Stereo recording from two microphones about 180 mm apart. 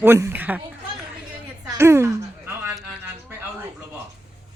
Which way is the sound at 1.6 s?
15° right (ahead or behind).